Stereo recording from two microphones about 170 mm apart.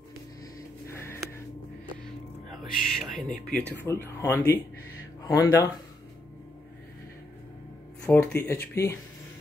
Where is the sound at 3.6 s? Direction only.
10° left (ahead or behind).